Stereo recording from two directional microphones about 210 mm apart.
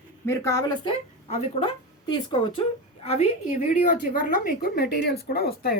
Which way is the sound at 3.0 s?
35° left (ahead or behind).